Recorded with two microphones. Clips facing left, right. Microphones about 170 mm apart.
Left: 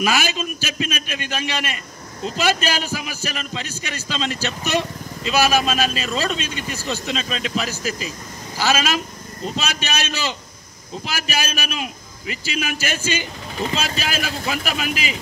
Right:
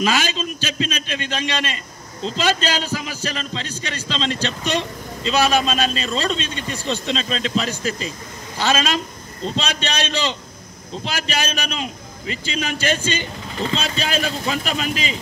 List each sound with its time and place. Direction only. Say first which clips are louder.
0.0 s a man's voice: right 1 dB; 10° left (ahead or behind)